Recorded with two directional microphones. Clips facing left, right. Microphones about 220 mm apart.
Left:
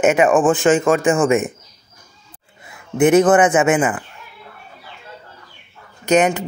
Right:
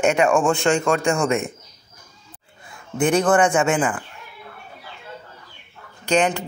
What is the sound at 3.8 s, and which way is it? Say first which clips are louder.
Speech: left 3 dB; 5° left (ahead or behind).